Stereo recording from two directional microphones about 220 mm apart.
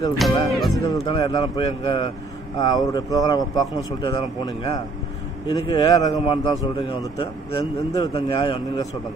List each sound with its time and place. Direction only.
0.2 s speech: centre (ahead or behind)
1.0 s a man's voice: 20° left (ahead or behind)